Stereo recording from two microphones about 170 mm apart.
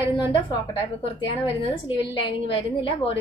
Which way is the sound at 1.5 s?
30° left (ahead or behind).